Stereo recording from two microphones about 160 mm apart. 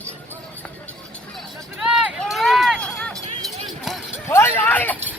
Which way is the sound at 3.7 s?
Centre (ahead or behind).